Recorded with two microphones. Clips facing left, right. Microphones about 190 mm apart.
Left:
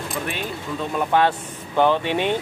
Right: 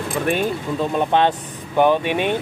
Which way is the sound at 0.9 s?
25° right (ahead or behind).